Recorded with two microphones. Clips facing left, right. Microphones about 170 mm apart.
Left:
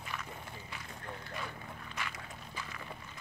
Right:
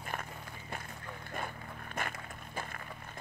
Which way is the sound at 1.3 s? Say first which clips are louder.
Right 2 dB; 50° right (ahead or behind).